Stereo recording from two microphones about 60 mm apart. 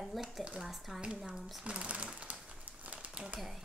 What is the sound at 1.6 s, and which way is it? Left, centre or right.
Crumpling, centre.